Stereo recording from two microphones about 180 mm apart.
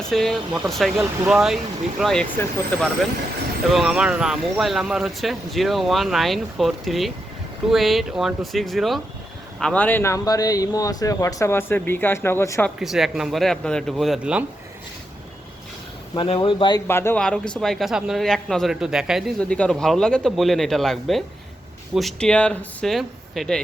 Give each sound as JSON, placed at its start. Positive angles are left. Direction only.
{"t": 0.0, "sound": "speech", "side_deg": 0}
{"t": 3.7, "sound": "speech", "side_deg": 0}
{"t": 12.8, "sound": "speech", "side_deg": 0}
{"t": 16.1, "sound": "speech", "side_deg": 30}
{"t": 16.8, "sound": "speech", "side_deg": 15}